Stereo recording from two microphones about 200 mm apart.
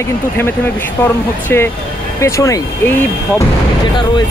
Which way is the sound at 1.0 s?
10° left (ahead or behind).